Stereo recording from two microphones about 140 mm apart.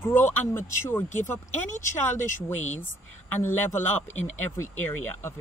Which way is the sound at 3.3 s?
15° left (ahead or behind).